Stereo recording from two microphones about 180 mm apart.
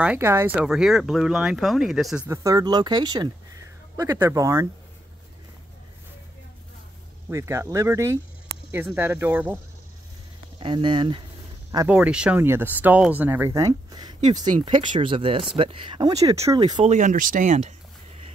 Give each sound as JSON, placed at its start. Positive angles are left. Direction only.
{"t": 0.0, "sound": "speech", "side_deg": -10}
{"t": 2.2, "sound": "speech", "side_deg": -15}
{"t": 7.2, "sound": "speech", "side_deg": -15}
{"t": 10.6, "sound": "speech", "side_deg": -25}
{"t": 11.9, "sound": "speech", "side_deg": -5}
{"t": 16.8, "sound": "speech", "side_deg": -45}